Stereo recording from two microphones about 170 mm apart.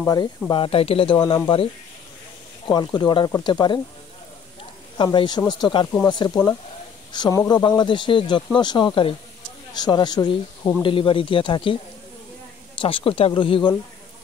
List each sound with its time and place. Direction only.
0.0 s speech: 20° left (ahead or behind)
0.5 s speech: 30° left (ahead or behind)
2.7 s speech: 25° left (ahead or behind)
4.9 s speech: 25° left (ahead or behind)
12.8 s speech: 35° left (ahead or behind)